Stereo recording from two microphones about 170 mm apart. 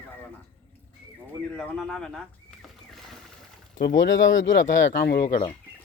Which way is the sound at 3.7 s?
80° left.